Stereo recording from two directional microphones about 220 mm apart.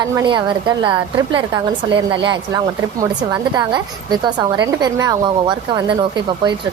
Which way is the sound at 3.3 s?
15° right (ahead or behind).